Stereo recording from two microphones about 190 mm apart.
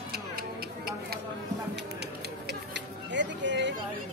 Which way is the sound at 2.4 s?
70° right (ahead or behind).